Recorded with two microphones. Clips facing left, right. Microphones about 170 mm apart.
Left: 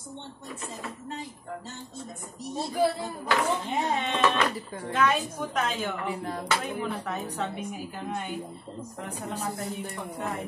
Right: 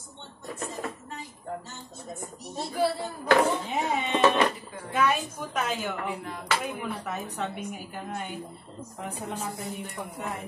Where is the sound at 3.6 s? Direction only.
10° right (ahead or behind).